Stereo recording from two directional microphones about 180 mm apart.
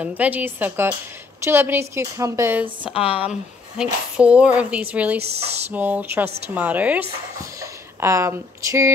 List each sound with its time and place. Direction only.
0.0 s a woman's voice: 10° right (ahead or behind)
2.9 s a woman's voice: 30° left (ahead or behind)
3.2 s a woman's voice: 5° right (ahead or behind)
7.6 s a sound: 15° right (ahead or behind)